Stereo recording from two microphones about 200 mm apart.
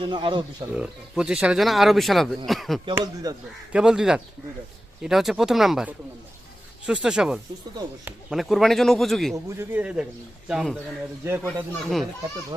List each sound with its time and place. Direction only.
0.0 s speech: 20° right (ahead or behind)
0.8 s speech: 5° right (ahead or behind)
2.9 s speech: 20° right (ahead or behind)
3.7 s speech: 5° right (ahead or behind)
9.3 s a man's voice: 10° right (ahead or behind)